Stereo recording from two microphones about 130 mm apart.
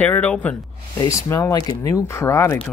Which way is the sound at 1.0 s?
25° left (ahead or behind).